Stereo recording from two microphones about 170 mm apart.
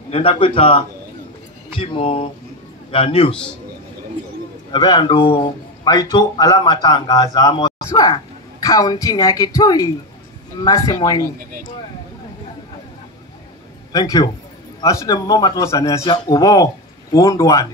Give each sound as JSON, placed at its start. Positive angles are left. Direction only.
{"t": 0.1, "sound": "a man's voice", "side_deg": 30}
{"t": 4.7, "sound": "a man's voice", "side_deg": 25}
{"t": 13.9, "sound": "a man's voice", "side_deg": 20}